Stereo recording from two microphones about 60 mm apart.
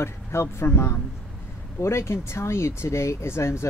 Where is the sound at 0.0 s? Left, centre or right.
Left.